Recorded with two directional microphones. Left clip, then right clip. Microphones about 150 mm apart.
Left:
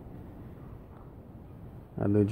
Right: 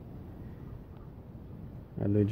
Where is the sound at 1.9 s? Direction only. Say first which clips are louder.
Left 3 dB; 20° left (ahead or behind).